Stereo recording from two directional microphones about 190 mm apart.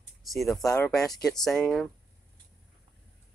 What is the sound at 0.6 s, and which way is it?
Female singing, 15° left (ahead or behind).